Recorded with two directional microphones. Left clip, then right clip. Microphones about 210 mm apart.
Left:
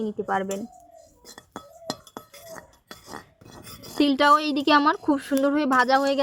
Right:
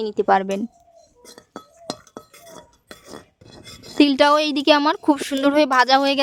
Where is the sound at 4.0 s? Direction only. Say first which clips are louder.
Right 4 dB; 35° right (ahead or behind).